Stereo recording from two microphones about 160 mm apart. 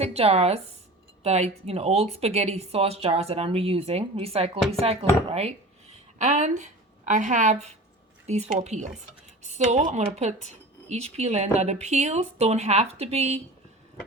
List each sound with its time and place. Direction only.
0.0 s a woman's voice: 40° right (ahead or behind)